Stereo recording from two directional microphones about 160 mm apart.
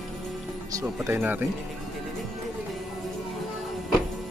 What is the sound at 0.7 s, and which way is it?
Speech, 15° right (ahead or behind).